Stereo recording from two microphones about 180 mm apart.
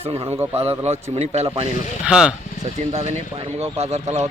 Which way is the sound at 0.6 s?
35° right (ahead or behind).